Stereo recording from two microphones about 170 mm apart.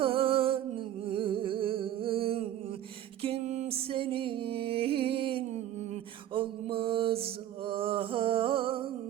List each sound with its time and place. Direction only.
0.0 s music: 35° right (ahead or behind)
6.3 s mantra: 30° right (ahead or behind)